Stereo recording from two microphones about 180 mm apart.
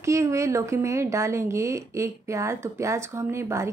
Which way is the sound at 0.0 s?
15° right (ahead or behind).